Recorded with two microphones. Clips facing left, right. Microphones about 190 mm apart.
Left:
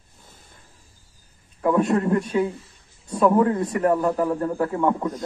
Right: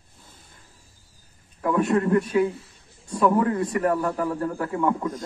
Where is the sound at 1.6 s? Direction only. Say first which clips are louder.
Left 2 dB; 25° left (ahead or behind).